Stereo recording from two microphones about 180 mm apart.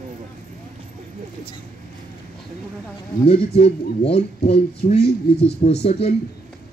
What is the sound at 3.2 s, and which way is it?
Speech, 35° left (ahead or behind).